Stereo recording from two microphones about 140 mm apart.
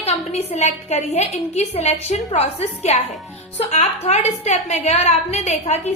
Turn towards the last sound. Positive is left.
turn(degrees=50)  # may be behind; listen again after turning